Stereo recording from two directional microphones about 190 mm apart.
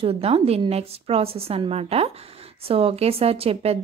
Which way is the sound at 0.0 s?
30° right (ahead or behind).